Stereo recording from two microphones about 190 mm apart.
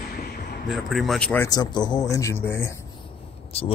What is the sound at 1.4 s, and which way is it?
Speech, 20° left (ahead or behind).